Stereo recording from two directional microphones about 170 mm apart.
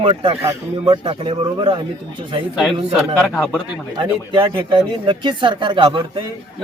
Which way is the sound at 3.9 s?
30° right (ahead or behind).